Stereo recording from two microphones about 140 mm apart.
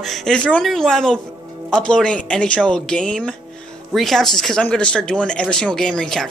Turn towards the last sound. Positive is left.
turn(degrees=5)  # may be behind; listen again after turning